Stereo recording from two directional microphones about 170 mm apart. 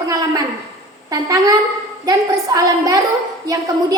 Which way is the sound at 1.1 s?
20° right (ahead or behind).